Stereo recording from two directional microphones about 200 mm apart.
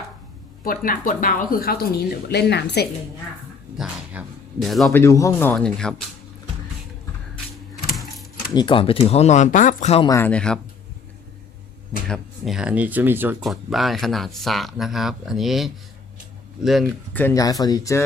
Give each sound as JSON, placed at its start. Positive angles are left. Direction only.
{"t": 0.6, "sound": "speech", "side_deg": 45}
{"t": 3.8, "sound": "speech", "side_deg": -5}
{"t": 4.9, "sound": "speech", "side_deg": 15}
{"t": 8.5, "sound": "speech", "side_deg": 25}
{"t": 10.1, "sound": "speech", "side_deg": 10}
{"t": 12.0, "sound": "speech", "side_deg": 0}
{"t": 17.2, "sound": "speech", "side_deg": 15}